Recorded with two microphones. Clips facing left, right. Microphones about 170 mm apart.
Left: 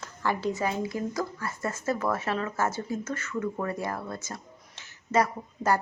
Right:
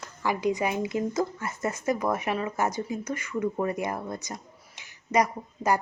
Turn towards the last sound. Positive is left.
turn(degrees=-15)  # may be behind; listen again after turning